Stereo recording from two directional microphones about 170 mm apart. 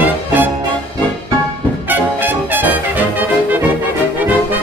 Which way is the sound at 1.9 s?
10° right (ahead or behind).